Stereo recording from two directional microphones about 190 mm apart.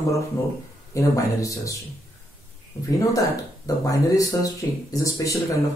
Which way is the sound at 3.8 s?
15° left (ahead or behind).